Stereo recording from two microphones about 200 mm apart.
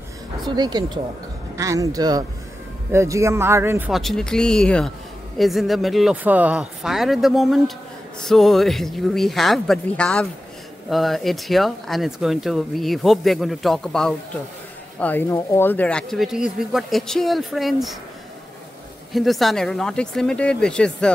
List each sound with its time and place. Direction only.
0.5 s speech: 20° right (ahead or behind)
3.9 s speech: centre (ahead or behind)
19.1 s speech: centre (ahead or behind)